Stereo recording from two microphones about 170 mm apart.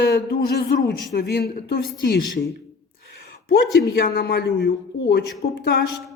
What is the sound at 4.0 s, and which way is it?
A man's voice, 70° left (ahead or behind).